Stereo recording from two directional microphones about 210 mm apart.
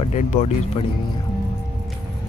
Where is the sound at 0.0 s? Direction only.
35° left (ahead or behind).